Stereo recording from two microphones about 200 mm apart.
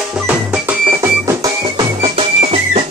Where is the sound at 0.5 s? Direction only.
10° right (ahead or behind).